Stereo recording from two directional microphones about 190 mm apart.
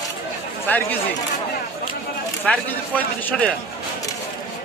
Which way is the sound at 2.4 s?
10° left (ahead or behind).